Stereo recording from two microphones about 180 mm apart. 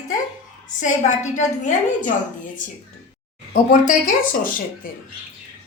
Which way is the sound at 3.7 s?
45° left (ahead or behind).